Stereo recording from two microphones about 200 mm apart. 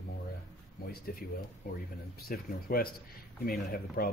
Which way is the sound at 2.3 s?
45° left (ahead or behind).